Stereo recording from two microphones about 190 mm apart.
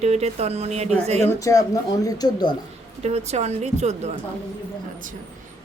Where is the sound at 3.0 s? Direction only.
35° right (ahead or behind).